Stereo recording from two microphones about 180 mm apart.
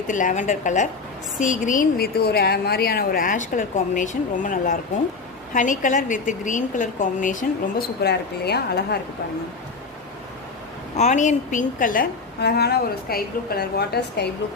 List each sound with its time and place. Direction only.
0.1 s a woman's voice: 45° left (ahead or behind)
8.0 s a woman's voice: 65° left (ahead or behind)
10.9 s a woman's voice: 40° left (ahead or behind); by 14.3 s 65° left (ahead or behind)